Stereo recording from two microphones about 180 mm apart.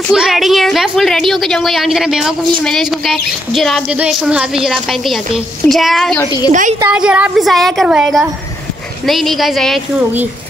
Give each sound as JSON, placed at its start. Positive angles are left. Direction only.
{"t": 0.1, "sound": "a woman's voice", "side_deg": 0}
{"t": 6.1, "sound": "a woman's voice", "side_deg": 20}
{"t": 6.9, "sound": "a woman's voice", "side_deg": -5}